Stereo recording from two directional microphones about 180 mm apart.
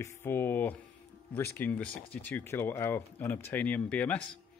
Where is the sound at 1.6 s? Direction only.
10° left (ahead or behind).